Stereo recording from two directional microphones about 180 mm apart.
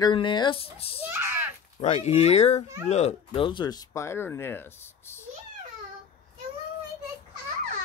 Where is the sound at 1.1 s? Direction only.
10° right (ahead or behind).